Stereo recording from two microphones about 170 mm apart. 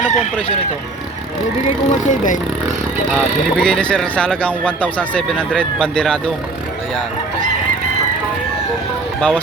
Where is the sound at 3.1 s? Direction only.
5° left (ahead or behind).